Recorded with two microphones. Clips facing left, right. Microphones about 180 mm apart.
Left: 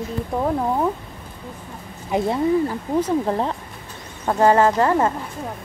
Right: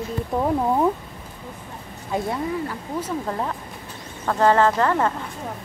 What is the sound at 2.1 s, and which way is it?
Speech, 25° left (ahead or behind).